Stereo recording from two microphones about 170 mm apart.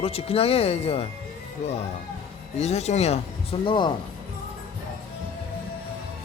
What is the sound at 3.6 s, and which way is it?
Speech, 30° left (ahead or behind).